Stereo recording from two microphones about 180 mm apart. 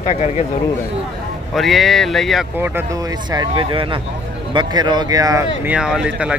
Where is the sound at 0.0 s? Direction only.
40° left (ahead or behind).